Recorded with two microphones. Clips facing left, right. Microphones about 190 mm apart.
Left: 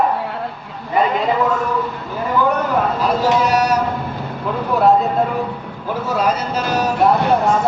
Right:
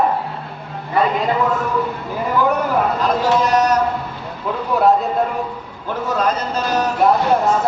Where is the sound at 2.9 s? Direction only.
10° left (ahead or behind).